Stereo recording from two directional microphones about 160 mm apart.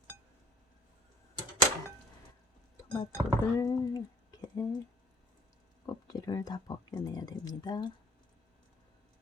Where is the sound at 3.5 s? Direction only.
25° left (ahead or behind).